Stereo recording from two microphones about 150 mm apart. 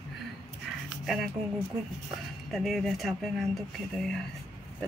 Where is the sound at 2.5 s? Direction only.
Centre (ahead or behind).